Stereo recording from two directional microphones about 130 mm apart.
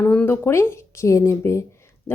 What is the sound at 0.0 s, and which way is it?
Speech, 15° left (ahead or behind).